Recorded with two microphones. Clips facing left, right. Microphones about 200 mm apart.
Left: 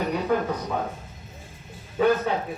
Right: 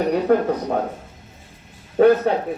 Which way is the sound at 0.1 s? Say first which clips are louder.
Right 7 dB; 50° right (ahead or behind).